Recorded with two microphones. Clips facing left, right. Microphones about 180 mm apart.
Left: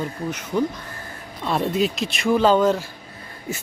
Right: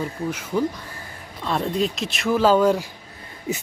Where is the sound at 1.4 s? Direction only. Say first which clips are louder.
Left 2 dB; 5° left (ahead or behind).